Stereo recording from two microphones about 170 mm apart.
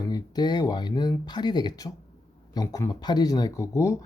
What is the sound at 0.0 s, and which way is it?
Speech, 25° left (ahead or behind).